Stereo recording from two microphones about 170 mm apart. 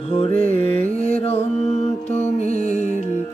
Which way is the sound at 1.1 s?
40° left (ahead or behind).